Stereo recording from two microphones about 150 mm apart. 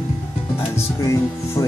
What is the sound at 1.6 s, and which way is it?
Speech, 20° left (ahead or behind).